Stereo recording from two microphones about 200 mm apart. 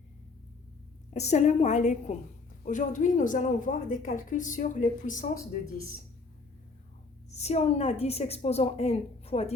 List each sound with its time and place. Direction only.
1.1 s a woman's voice: 35° left (ahead or behind)
7.3 s a woman's voice: 35° left (ahead or behind)